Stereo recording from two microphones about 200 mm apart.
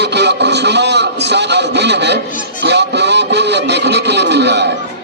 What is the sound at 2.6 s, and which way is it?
Music, 60° right (ahead or behind).